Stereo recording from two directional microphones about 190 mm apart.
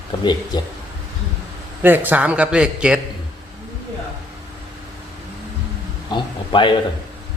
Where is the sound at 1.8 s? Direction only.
10° right (ahead or behind).